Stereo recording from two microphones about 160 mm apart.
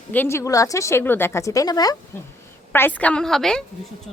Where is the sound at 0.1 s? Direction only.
15° left (ahead or behind).